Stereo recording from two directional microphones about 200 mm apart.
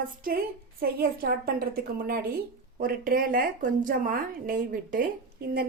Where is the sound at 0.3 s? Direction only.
50° right (ahead or behind).